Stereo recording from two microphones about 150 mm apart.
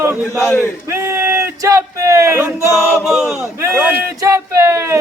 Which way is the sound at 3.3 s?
20° right (ahead or behind).